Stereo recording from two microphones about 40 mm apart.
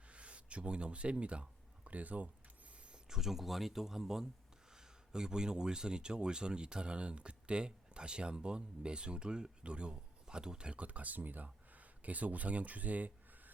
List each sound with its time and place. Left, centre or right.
0.1 s speech: right
3.1 s speech: centre; by 13.5 s right